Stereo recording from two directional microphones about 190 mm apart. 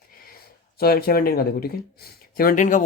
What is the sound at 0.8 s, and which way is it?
Speech, 55° left (ahead or behind).